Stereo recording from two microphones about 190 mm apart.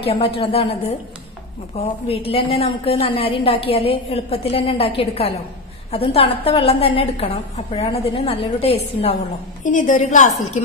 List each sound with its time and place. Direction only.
0.0 s a woman's voice: 30° left (ahead or behind)
9.6 s a woman's voice: 45° left (ahead or behind)